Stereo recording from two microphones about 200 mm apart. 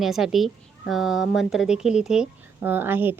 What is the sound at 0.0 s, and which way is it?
Speech, centre (ahead or behind).